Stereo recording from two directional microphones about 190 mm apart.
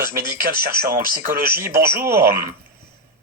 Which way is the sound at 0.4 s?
50° right (ahead or behind).